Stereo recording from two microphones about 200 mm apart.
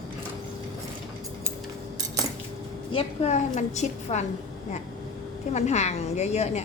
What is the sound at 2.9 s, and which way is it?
A woman's voice, 35° left (ahead or behind).